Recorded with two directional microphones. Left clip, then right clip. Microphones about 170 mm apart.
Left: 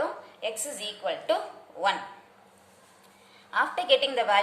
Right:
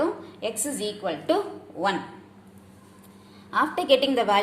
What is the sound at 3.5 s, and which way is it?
Speech, 20° right (ahead or behind).